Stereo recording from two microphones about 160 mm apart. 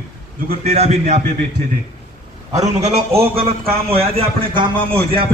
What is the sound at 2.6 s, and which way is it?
A man's voice, 40° right (ahead or behind).